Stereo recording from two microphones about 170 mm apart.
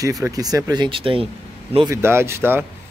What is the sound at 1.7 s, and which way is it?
Speech, 20° right (ahead or behind).